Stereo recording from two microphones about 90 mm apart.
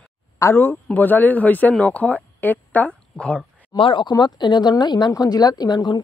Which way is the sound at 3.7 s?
70° left (ahead or behind).